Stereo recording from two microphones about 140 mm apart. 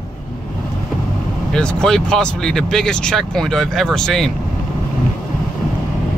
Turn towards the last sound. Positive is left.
turn(degrees=5)  # may be behind; listen again after turning